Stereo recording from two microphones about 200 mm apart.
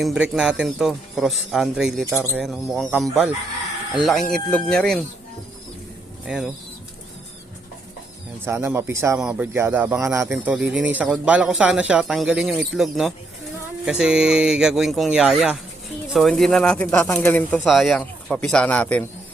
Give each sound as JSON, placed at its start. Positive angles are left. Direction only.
{"t": 0.0, "sound": "speech", "side_deg": -5}
{"t": 6.2, "sound": "speech", "side_deg": -5}
{"t": 8.4, "sound": "a man's voice", "side_deg": -10}